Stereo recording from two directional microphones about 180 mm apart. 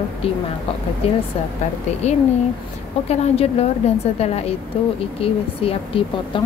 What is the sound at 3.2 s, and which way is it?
A woman's voice, 35° left (ahead or behind).